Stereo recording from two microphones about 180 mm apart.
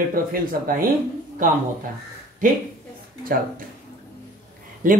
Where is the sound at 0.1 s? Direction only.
50° right (ahead or behind).